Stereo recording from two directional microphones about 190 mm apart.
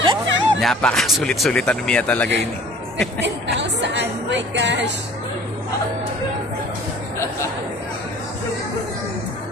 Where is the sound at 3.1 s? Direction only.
65° right (ahead or behind).